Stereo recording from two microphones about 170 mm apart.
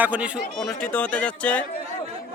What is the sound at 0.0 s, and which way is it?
Speech, 10° right (ahead or behind).